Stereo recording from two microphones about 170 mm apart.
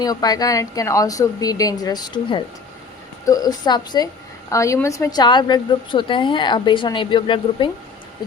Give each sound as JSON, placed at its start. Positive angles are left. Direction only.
{"t": 0.0, "sound": "a woman's voice", "side_deg": 20}